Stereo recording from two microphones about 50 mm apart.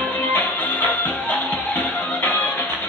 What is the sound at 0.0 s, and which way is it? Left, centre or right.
Music, left.